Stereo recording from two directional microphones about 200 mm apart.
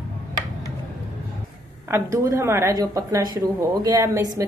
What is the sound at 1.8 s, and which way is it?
Speech, 15° right (ahead or behind).